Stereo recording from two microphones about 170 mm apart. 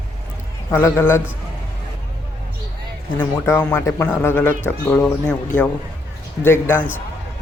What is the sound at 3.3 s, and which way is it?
Speech, 15° left (ahead or behind).